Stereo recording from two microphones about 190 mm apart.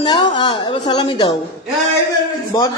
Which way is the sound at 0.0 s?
20° left (ahead or behind).